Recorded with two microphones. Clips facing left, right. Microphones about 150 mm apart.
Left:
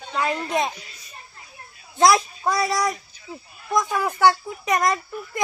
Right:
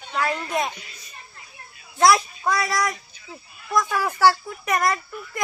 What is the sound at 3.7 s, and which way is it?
Speech, 20° left (ahead or behind).